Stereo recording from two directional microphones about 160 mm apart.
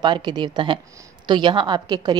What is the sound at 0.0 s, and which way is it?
A woman's voice, 30° right (ahead or behind).